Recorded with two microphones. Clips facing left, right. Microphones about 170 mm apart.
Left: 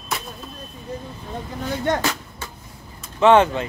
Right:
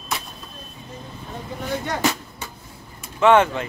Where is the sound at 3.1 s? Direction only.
25° left (ahead or behind).